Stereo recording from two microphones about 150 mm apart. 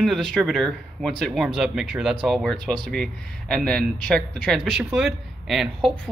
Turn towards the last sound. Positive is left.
turn(degrees=0)  # may be behind; listen again after turning